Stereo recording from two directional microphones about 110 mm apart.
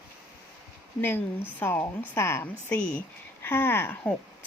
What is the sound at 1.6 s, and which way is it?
A woman's voice, 20° left (ahead or behind).